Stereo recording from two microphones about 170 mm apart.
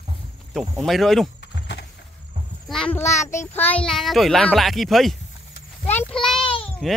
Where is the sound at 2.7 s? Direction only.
5° left (ahead or behind).